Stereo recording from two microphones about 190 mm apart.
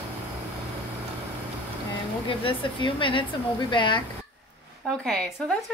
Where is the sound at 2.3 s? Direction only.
25° left (ahead or behind).